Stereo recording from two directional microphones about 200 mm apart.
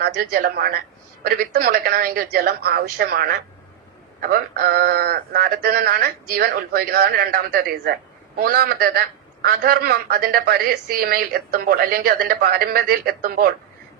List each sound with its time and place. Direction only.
0.0 s a man's voice: 50° right (ahead or behind)